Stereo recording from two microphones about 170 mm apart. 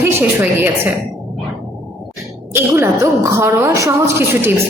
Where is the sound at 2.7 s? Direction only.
15° right (ahead or behind).